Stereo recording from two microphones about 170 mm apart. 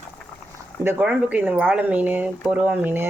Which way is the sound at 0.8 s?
10° right (ahead or behind).